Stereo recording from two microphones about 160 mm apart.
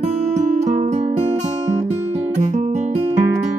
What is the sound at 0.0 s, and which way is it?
Music, 45° right (ahead or behind).